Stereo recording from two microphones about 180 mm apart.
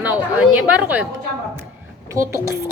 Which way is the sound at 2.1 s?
15° right (ahead or behind).